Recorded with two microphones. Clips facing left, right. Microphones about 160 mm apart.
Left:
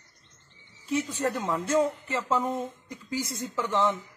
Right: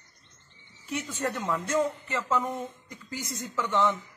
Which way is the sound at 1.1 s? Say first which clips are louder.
Left 2 dB; 35° left (ahead or behind).